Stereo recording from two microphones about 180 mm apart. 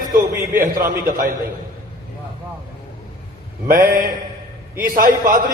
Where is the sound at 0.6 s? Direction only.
45° right (ahead or behind).